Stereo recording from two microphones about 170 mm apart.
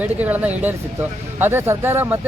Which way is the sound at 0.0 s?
10° right (ahead or behind).